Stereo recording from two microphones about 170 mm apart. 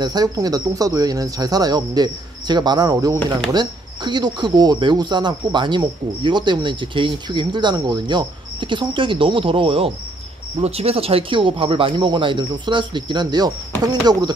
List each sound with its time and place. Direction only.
0.0 s speech: 25° right (ahead or behind)